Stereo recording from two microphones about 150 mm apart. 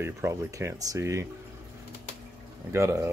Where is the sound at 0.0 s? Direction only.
20° right (ahead or behind).